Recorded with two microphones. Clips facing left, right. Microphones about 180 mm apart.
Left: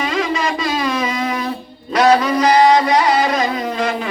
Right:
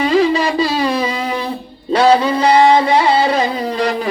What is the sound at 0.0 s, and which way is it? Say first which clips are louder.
Music: right 6 dB; 35° right (ahead or behind).